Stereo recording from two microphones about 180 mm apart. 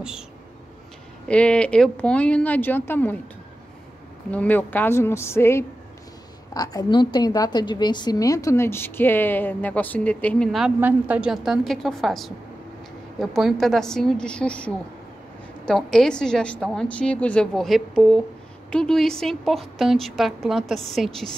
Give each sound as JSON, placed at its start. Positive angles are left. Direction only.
{"t": 1.2, "sound": "a woman's voice", "side_deg": 5}
{"t": 4.3, "sound": "a woman's voice", "side_deg": 10}
{"t": 10.8, "sound": "a woman's voice", "side_deg": -10}